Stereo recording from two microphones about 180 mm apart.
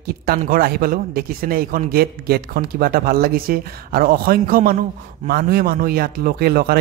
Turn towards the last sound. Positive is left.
turn(degrees=-60)  # may be behind; listen again after turning